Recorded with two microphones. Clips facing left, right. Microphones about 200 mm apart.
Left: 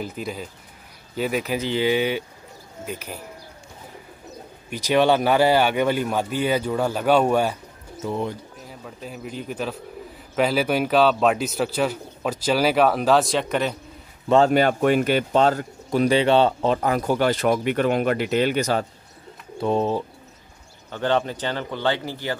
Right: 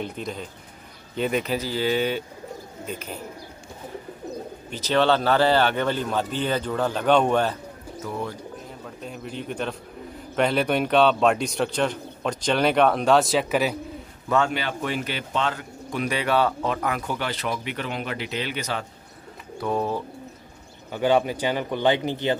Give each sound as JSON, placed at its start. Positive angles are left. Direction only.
{"t": 0.0, "sound": "speech", "side_deg": 5}
{"t": 1.6, "sound": "speech", "side_deg": 20}
{"t": 4.6, "sound": "speech", "side_deg": 10}
{"t": 8.0, "sound": "speech", "side_deg": 20}
{"t": 8.6, "sound": "speech", "side_deg": 5}
{"t": 14.5, "sound": "speech", "side_deg": 45}
{"t": 19.6, "sound": "speech", "side_deg": 25}
{"t": 20.9, "sound": "speech", "side_deg": -10}